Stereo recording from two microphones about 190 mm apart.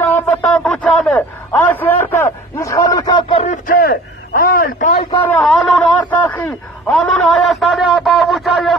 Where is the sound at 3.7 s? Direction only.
50° left (ahead or behind).